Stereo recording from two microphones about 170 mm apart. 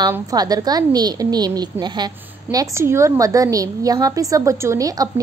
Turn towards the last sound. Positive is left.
turn(degrees=-20)  # may be behind; listen again after turning